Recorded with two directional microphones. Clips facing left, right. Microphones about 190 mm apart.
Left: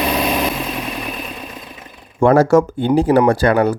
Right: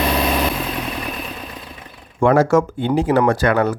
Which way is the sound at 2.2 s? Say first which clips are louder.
Left 3 dB; 40° left (ahead or behind).